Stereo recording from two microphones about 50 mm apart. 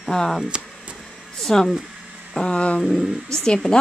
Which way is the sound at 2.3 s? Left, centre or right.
Centre.